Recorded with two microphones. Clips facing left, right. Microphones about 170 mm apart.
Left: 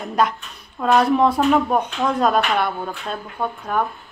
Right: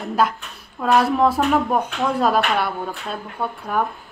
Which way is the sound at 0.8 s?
Centre (ahead or behind).